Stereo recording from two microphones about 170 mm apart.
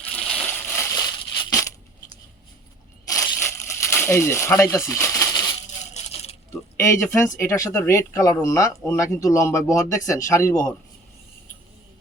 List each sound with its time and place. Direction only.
0.3 s crushing: 20° left (ahead or behind)
3.1 s crumpling: 20° left (ahead or behind)
5.9 s coin: 35° left (ahead or behind)
6.8 s speech: 15° left (ahead or behind)